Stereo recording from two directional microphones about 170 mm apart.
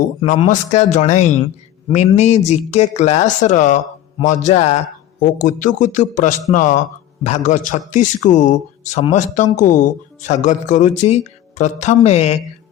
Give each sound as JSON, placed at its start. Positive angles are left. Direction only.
{"t": 0.3, "sound": "a man's voice", "side_deg": 45}